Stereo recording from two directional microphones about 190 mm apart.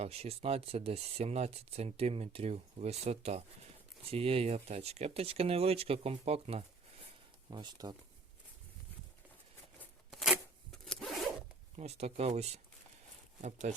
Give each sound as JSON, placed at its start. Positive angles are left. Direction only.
{"t": 0.0, "sound": "speech", "side_deg": -35}
{"t": 10.1, "sound": "zipper", "side_deg": 0}
{"t": 11.8, "sound": "speech", "side_deg": -35}